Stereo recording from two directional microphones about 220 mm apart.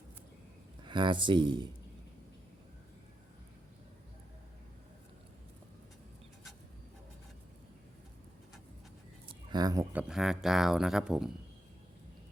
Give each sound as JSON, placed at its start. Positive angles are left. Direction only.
{"t": 0.9, "sound": "speech", "side_deg": -20}
{"t": 9.3, "sound": "speech", "side_deg": -20}